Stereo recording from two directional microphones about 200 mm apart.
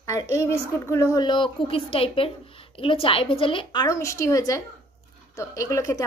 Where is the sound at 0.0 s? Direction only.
15° left (ahead or behind).